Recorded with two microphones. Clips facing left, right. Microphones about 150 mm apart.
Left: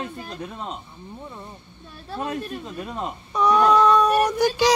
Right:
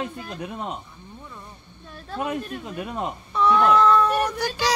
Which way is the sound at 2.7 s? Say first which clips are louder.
Right 2 dB; 10° right (ahead or behind).